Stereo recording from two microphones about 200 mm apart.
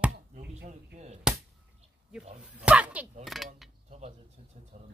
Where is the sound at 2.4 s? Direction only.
5° right (ahead or behind).